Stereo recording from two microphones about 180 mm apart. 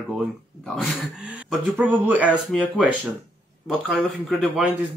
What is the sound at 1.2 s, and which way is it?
A man's voice, 10° right (ahead or behind).